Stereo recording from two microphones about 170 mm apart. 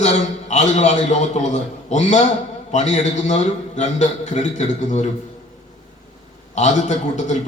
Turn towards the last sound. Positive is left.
turn(degrees=45)  # may be behind; listen again after turning